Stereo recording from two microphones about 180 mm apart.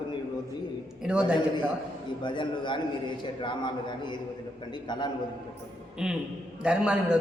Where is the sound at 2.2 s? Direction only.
25° left (ahead or behind).